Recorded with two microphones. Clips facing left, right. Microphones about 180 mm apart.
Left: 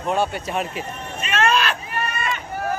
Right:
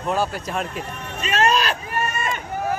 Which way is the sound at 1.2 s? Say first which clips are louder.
Right 1 dB; 35° right (ahead or behind).